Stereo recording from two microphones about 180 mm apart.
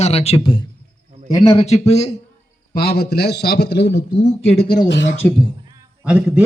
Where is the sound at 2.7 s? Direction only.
60° left (ahead or behind).